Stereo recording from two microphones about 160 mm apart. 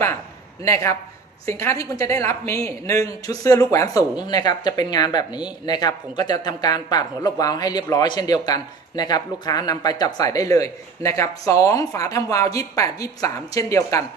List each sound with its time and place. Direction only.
0.6 s speech: 20° left (ahead or behind)